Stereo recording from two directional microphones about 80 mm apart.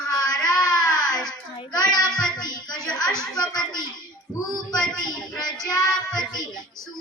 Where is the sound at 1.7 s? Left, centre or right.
Left.